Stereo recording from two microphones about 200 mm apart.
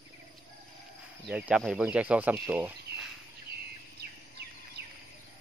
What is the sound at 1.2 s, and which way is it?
Speech, 5° right (ahead or behind).